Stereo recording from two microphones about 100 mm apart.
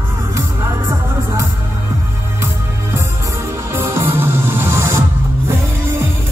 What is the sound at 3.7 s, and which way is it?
Music, 25° right (ahead or behind).